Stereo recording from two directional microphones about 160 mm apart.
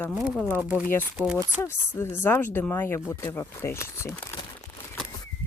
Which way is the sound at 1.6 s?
15° left (ahead or behind).